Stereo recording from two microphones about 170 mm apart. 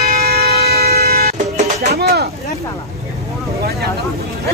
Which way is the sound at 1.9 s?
70° right (ahead or behind).